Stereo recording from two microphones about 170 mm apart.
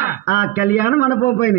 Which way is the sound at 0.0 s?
60° left (ahead or behind).